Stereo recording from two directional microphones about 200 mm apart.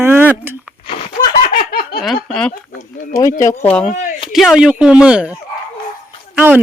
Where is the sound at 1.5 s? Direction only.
50° left (ahead or behind).